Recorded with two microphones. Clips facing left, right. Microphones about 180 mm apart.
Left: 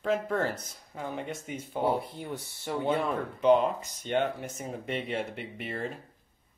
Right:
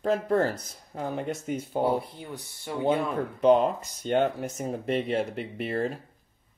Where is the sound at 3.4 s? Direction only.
35° right (ahead or behind).